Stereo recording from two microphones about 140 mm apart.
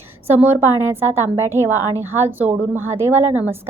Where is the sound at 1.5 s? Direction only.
15° right (ahead or behind).